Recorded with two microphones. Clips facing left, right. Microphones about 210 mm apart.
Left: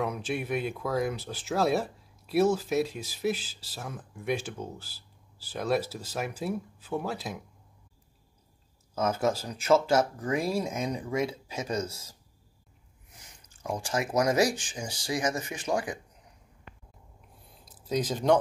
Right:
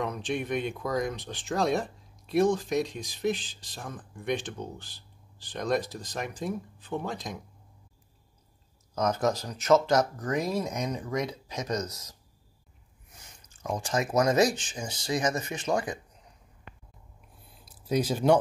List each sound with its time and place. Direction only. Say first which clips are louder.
0.0 s speech: even; 5° left (ahead or behind)
9.5 s speech: right 1 dB; 10° left (ahead or behind)
11.8 s speech: left 1 dB; 30° left (ahead or behind)
13.1 s speech: right 1 dB; 10° left (ahead or behind)
17.6 s speech: right 2 dB; 10° right (ahead or behind)